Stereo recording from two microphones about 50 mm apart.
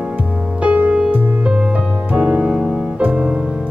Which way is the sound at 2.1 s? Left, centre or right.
Right.